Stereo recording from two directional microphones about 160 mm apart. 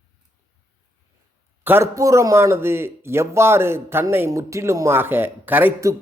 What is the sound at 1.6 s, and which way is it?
Speech, 15° right (ahead or behind).